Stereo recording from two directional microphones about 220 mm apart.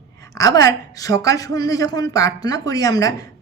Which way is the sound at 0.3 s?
15° left (ahead or behind).